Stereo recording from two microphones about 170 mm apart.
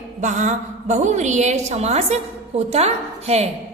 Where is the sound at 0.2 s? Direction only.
45° right (ahead or behind).